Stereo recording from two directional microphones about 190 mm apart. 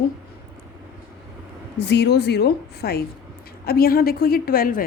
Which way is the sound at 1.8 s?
60° left (ahead or behind).